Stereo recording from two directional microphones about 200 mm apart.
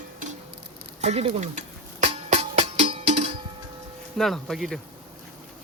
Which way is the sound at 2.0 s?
30° right (ahead or behind).